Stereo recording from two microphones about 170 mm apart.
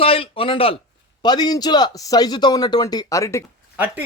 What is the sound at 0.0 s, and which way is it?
A man's voice, 35° left (ahead or behind).